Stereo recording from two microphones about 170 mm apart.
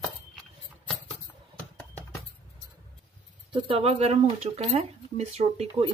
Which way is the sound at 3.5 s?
30° right (ahead or behind).